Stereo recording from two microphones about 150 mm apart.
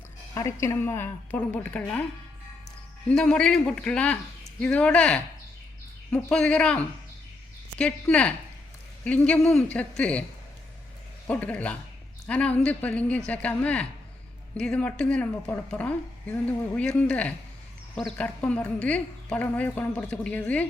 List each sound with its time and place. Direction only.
0.3 s a woman's voice: 20° left (ahead or behind)
3.1 s a woman's voice: 5° left (ahead or behind)
11.3 s a woman's voice: 10° left (ahead or behind)